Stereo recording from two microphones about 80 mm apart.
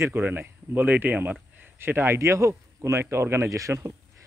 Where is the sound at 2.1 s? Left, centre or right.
Right.